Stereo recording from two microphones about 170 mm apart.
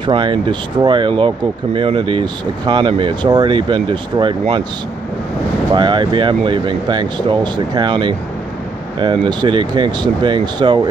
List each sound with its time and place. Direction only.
0.0 s speech: 30° right (ahead or behind)
5.7 s speech: 25° right (ahead or behind)